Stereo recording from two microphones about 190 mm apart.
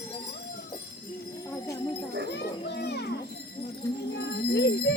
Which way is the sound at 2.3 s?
60° left (ahead or behind).